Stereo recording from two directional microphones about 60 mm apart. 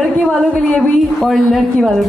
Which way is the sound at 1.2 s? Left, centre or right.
Centre.